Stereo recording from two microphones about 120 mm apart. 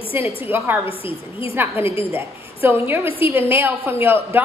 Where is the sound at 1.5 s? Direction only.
20° right (ahead or behind).